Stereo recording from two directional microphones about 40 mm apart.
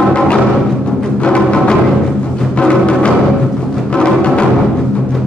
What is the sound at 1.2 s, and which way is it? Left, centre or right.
Music, left.